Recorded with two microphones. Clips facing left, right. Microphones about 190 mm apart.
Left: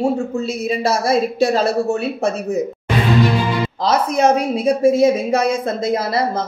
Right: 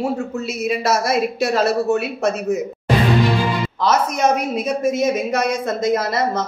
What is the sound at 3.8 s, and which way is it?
A woman's voice, 30° left (ahead or behind).